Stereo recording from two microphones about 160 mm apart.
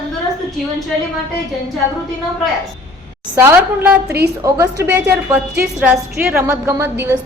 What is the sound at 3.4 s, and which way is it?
A woman's voice, 10° right (ahead or behind).